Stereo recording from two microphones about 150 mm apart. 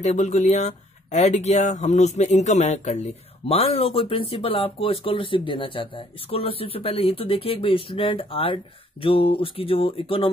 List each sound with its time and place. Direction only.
0.0 s speech: 50° left (ahead or behind)